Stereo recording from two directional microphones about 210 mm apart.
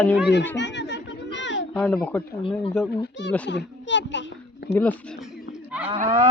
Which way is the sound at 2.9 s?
50° left (ahead or behind).